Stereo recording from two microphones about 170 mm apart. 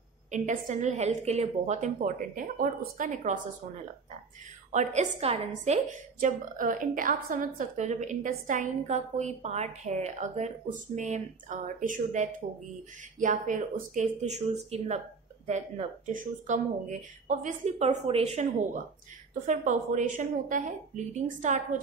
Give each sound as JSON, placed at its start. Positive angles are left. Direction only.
{"t": 0.3, "sound": "a woman's voice", "side_deg": -45}
{"t": 4.7, "sound": "a woman's voice", "side_deg": -45}
{"t": 6.1, "sound": "a woman's voice", "side_deg": -50}
{"t": 16.1, "sound": "a woman's voice", "side_deg": -50}